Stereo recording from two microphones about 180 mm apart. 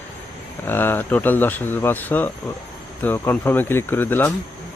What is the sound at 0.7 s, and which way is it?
Speech, 10° left (ahead or behind).